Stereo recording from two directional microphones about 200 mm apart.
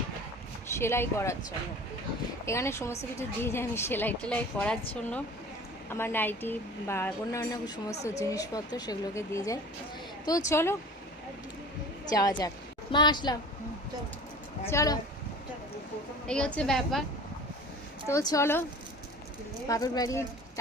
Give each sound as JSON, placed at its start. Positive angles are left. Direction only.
{"t": 0.8, "sound": "speech", "side_deg": 10}
{"t": 2.5, "sound": "speech", "side_deg": 15}
{"t": 5.9, "sound": "speech", "side_deg": 10}
{"t": 12.0, "sound": "a woman's voice", "side_deg": 20}
{"t": 14.7, "sound": "speech", "side_deg": 15}
{"t": 16.2, "sound": "a woman's voice", "side_deg": 5}
{"t": 18.1, "sound": "speech", "side_deg": 15}
{"t": 19.6, "sound": "speech", "side_deg": 15}